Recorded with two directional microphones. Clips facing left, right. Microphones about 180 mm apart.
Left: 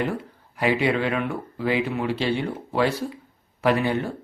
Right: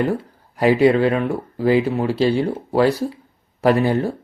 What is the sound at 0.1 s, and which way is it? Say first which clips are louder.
Speech: right 6 dB; 40° right (ahead or behind).